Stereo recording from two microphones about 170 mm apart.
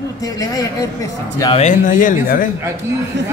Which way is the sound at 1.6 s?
50° left (ahead or behind).